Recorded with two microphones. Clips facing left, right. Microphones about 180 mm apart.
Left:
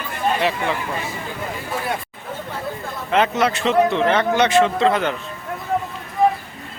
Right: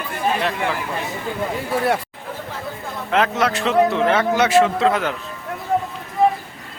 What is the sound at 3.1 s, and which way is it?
Speech, centre (ahead or behind).